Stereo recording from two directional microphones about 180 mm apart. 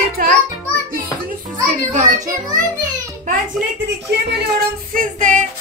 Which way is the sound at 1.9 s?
45° right (ahead or behind).